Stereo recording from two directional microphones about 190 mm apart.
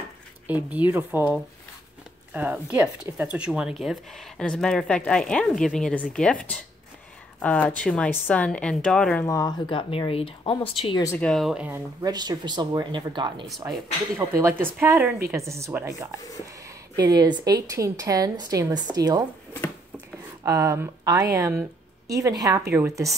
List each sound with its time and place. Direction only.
0.5 s a woman's voice: 10° right (ahead or behind); by 11.1 s 20° left (ahead or behind)
11.1 s speech: 5° left (ahead or behind)
12.0 s a woman's voice: 20° right (ahead or behind)
14.1 s speech: 15° right (ahead or behind)
17.0 s a woman's voice: 20° right (ahead or behind)
20.4 s speech: 15° right (ahead or behind)